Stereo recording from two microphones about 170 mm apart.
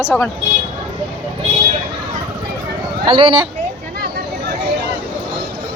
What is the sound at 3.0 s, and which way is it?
Speech, 30° right (ahead or behind).